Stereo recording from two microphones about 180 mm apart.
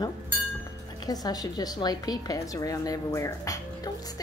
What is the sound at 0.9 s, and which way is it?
A woman's voice, 20° left (ahead or behind).